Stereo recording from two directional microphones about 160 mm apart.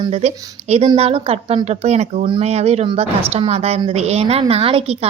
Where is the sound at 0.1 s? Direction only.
40° right (ahead or behind).